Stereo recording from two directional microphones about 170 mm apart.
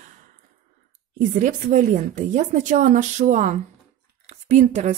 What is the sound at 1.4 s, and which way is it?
A woman's voice, 50° right (ahead or behind).